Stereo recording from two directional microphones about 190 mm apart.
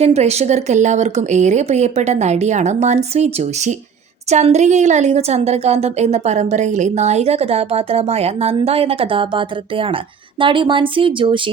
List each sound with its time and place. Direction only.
0.0 s a woman's voice: 35° right (ahead or behind)